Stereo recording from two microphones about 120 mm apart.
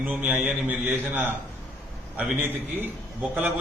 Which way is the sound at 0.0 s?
10° right (ahead or behind).